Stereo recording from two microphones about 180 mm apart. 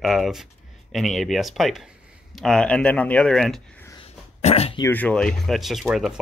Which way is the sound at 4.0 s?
35° left (ahead or behind).